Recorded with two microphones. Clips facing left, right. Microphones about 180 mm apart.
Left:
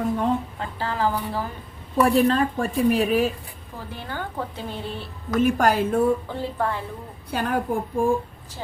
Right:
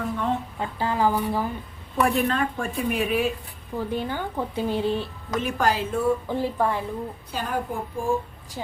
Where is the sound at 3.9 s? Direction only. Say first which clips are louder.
Right 2 dB; 15° right (ahead or behind).